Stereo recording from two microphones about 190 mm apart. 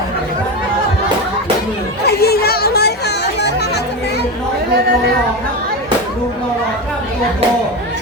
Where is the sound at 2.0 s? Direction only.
55° left (ahead or behind).